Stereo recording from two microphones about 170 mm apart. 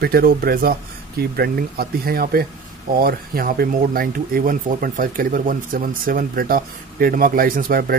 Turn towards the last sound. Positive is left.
turn(degrees=-60)  # may be behind; listen again after turning